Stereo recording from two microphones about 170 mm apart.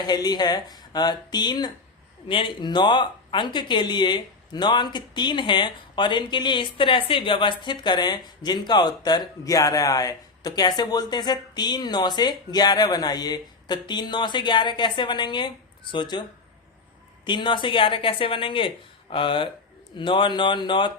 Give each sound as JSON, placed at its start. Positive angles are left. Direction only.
{"t": 0.1, "sound": "speech", "side_deg": 25}
{"t": 17.2, "sound": "speech", "side_deg": 30}